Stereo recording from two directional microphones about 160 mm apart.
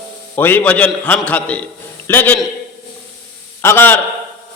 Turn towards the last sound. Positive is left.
turn(degrees=15)  # may be behind; listen again after turning